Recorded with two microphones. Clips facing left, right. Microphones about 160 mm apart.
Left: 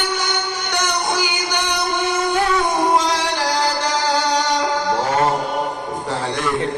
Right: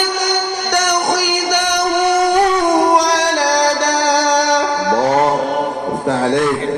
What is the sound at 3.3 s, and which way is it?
Music, 40° right (ahead or behind).